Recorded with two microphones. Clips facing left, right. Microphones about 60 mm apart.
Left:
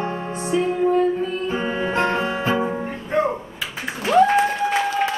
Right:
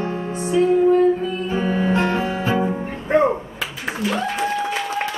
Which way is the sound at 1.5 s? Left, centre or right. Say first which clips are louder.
Right 6 dB; left.